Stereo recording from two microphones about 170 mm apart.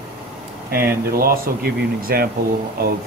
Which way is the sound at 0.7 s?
60° right (ahead or behind).